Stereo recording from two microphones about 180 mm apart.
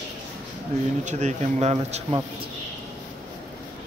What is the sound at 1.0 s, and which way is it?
Speech, 40° right (ahead or behind).